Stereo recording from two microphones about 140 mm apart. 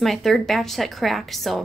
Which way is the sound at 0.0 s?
Centre (ahead or behind).